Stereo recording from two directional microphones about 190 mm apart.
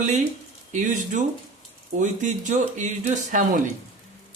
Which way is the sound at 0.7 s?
40° right (ahead or behind).